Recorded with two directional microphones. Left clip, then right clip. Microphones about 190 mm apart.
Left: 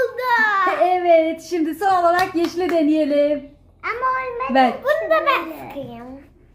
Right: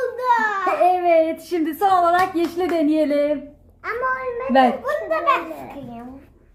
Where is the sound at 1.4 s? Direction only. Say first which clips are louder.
Right 1 dB; 20° right (ahead or behind).